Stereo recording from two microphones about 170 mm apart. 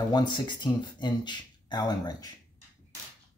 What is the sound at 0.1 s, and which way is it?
Speech, 25° left (ahead or behind).